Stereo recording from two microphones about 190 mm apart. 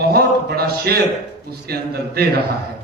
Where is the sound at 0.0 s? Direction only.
55° right (ahead or behind).